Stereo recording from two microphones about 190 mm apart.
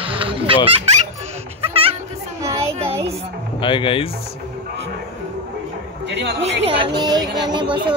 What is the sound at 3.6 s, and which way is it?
Speech, 25° left (ahead or behind).